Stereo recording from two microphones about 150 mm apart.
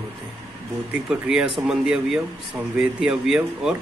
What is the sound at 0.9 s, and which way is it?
Speech, 5° right (ahead or behind).